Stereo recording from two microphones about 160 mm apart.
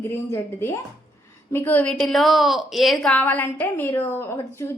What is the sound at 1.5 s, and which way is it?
A woman's voice, 10° left (ahead or behind).